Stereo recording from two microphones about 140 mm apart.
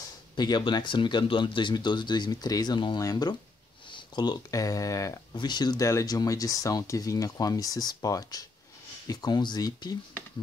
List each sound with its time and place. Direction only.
0.4 s speech: 30° left (ahead or behind)